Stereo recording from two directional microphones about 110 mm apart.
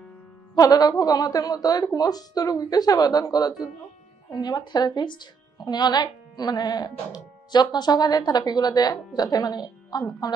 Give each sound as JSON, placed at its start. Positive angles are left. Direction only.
{"t": 0.6, "sound": "speech", "side_deg": 35}